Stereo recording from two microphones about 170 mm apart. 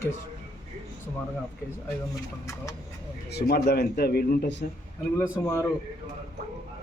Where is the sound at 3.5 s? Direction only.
70° left (ahead or behind).